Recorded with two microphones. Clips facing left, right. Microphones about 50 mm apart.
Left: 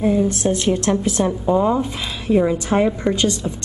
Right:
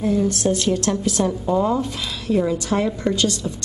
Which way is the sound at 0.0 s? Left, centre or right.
Left.